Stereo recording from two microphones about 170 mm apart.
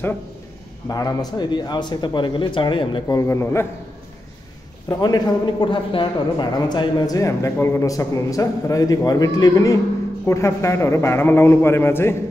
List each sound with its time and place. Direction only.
0.8 s a man's voice: 25° left (ahead or behind)
4.8 s a man's voice: 25° left (ahead or behind)